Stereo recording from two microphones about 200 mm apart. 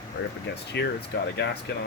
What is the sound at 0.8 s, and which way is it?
Speech, 55° left (ahead or behind).